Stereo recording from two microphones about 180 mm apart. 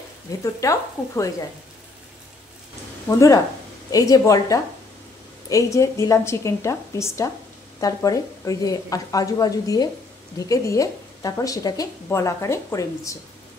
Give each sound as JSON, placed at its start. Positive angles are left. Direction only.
{"t": 0.4, "sound": "a woman's voice", "side_deg": 15}
{"t": 3.1, "sound": "a woman's voice", "side_deg": 20}